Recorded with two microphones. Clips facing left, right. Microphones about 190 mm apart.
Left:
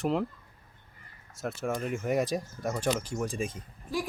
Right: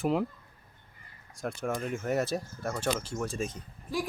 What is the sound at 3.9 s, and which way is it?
Speech, centre (ahead or behind).